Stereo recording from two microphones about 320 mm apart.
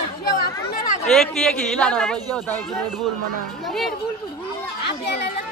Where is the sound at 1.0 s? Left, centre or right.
Centre.